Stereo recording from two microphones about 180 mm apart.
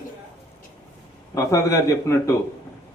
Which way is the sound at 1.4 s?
15° left (ahead or behind).